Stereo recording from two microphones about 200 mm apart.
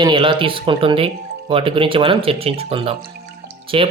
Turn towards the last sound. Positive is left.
turn(degrees=-25)  # may be behind; listen again after turning